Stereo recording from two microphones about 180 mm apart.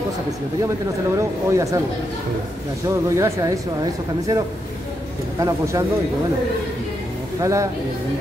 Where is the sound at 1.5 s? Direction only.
15° right (ahead or behind).